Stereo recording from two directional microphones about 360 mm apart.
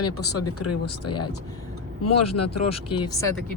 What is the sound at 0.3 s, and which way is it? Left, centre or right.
Speech, left.